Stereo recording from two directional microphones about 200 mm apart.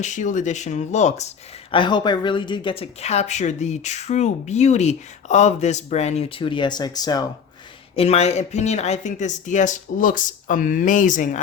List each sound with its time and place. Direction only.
0.0 s speech: 40° left (ahead or behind)
1.7 s speech: 25° left (ahead or behind)
7.9 s speech: 30° left (ahead or behind)